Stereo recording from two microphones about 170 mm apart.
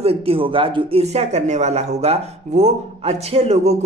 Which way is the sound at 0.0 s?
35° right (ahead or behind).